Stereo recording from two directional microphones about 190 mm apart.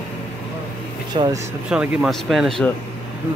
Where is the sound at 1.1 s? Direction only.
20° right (ahead or behind).